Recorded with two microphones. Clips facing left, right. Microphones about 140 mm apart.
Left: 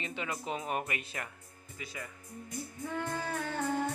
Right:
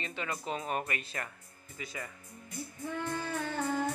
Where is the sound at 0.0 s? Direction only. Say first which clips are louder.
Even; 15° left (ahead or behind).